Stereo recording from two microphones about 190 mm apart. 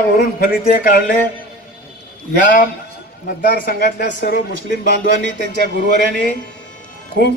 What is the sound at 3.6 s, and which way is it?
Speech, 55° left (ahead or behind).